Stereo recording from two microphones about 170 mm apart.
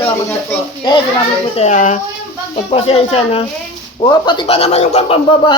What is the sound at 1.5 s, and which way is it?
Speech, 45° left (ahead or behind).